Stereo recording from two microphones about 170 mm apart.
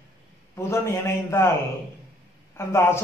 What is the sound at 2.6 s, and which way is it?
Speech, 15° left (ahead or behind).